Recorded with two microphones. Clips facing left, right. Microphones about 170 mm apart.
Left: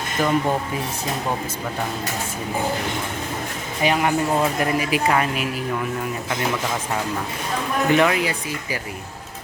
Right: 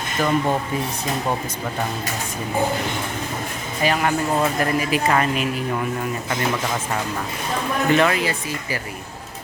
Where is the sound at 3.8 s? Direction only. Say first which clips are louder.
Left 1 dB; 15° left (ahead or behind).